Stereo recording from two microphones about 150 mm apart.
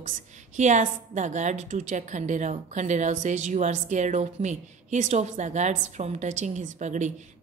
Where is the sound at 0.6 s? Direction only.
55° right (ahead or behind).